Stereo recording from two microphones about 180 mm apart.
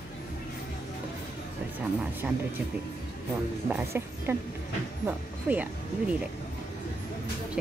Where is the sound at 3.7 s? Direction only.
15° right (ahead or behind).